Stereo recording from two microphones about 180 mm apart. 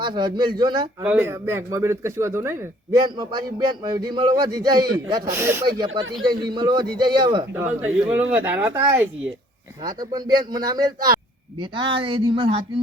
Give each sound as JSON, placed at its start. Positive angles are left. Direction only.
{"t": 0.0, "sound": "a man's voice", "side_deg": -25}
{"t": 1.0, "sound": "a man's voice", "side_deg": -10}
{"t": 3.0, "sound": "a man's voice", "side_deg": -25}
{"t": 5.7, "sound": "a man's voice", "side_deg": -25}
{"t": 7.5, "sound": "a man's voice", "side_deg": -10}
{"t": 9.8, "sound": "a man's voice", "side_deg": -20}